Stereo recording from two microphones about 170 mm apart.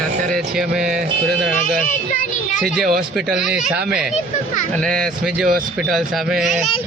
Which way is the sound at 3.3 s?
5° right (ahead or behind).